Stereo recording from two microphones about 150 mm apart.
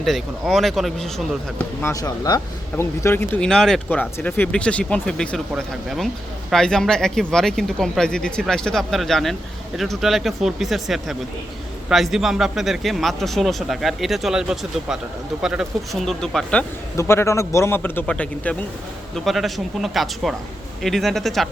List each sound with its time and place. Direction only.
0.0 s a man's voice: centre (ahead or behind)
1.8 s a man's voice: 20° left (ahead or behind); by 16.6 s 5° left (ahead or behind)
17.0 s a man's voice: 20° left (ahead or behind); by 21.5 s centre (ahead or behind)